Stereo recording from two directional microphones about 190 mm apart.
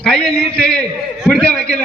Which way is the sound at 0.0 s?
5° left (ahead or behind).